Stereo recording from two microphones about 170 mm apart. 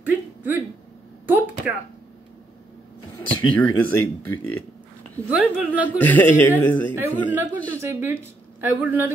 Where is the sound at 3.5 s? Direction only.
10° left (ahead or behind).